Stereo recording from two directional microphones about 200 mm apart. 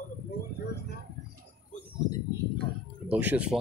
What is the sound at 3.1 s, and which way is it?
Speech, 5° right (ahead or behind).